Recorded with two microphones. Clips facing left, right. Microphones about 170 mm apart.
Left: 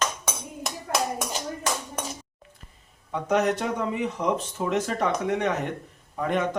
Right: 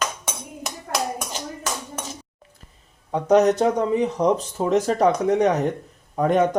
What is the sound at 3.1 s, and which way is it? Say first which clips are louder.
Speech: right 7 dB; 40° right (ahead or behind).